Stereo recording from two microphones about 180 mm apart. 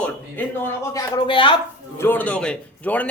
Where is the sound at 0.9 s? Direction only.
25° left (ahead or behind).